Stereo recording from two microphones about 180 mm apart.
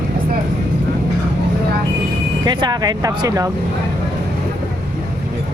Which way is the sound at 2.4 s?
25° right (ahead or behind).